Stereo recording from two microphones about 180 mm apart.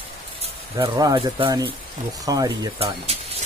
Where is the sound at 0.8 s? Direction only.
20° right (ahead or behind).